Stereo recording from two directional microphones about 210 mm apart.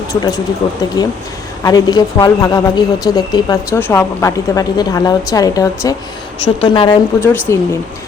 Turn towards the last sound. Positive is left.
turn(degrees=10)  # may be behind; listen again after turning